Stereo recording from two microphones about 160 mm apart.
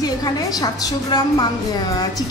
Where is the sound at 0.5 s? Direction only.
25° left (ahead or behind).